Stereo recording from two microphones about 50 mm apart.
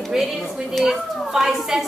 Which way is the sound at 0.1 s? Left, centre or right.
Centre.